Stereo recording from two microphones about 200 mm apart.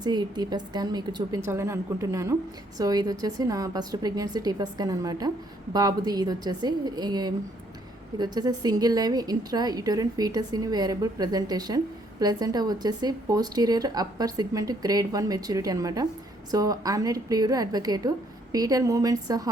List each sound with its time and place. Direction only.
0.0 s a woman's voice: 20° right (ahead or behind)